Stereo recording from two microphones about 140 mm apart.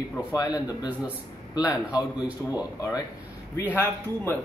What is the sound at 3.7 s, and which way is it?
Speech, 15° left (ahead or behind).